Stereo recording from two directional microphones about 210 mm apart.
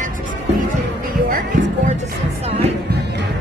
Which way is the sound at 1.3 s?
40° right (ahead or behind).